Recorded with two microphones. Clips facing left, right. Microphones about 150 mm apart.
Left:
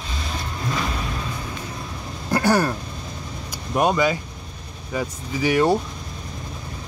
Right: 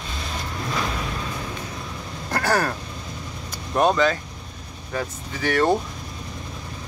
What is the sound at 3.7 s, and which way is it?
Speech, 10° left (ahead or behind).